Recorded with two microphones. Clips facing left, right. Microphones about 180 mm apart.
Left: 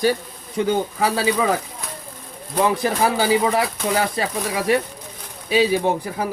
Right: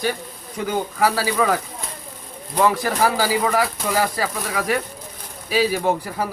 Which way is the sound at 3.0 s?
20° left (ahead or behind).